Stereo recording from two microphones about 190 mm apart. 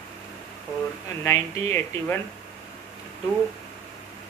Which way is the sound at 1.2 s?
15° left (ahead or behind).